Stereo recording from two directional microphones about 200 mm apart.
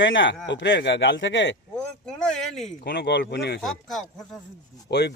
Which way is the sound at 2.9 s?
55° left (ahead or behind).